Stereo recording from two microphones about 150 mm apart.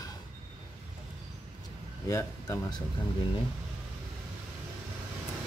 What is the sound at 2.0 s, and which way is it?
Burping, 20° left (ahead or behind).